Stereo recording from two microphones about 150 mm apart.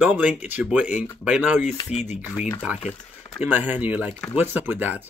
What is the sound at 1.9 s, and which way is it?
Speech, 50° left (ahead or behind).